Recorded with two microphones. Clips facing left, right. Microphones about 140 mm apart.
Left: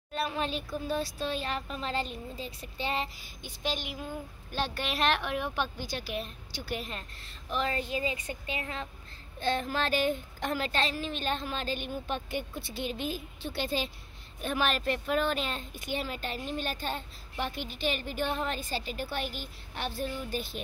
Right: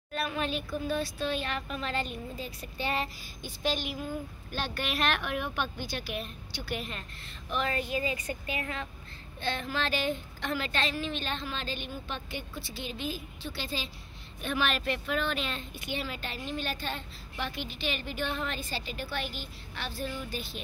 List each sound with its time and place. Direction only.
0.1 s a woman's voice: 30° left (ahead or behind)
4.5 s a woman's voice: 30° left (ahead or behind)
9.4 s speech: 40° left (ahead or behind)
14.4 s speech: 40° left (ahead or behind)